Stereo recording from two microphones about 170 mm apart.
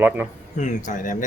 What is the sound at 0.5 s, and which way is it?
Speech, 45° left (ahead or behind).